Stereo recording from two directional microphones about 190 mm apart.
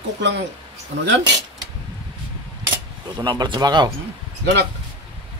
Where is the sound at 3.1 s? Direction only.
20° right (ahead or behind).